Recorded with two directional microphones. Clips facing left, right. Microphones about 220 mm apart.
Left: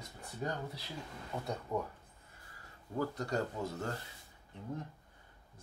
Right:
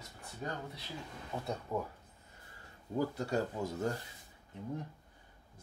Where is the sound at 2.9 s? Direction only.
10° right (ahead or behind).